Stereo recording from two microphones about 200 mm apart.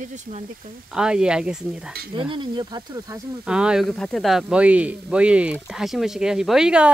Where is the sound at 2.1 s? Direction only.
25° right (ahead or behind).